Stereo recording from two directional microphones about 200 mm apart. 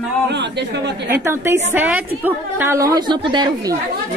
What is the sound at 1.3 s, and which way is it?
A woman's voice, 15° right (ahead or behind).